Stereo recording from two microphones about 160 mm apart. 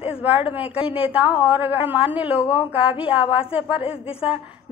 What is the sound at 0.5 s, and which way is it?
Speech, 10° right (ahead or behind).